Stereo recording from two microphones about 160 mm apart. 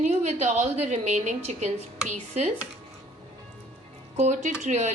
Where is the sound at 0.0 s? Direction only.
45° right (ahead or behind).